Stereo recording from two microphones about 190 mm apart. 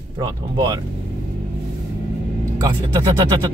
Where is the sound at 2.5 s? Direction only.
25° right (ahead or behind).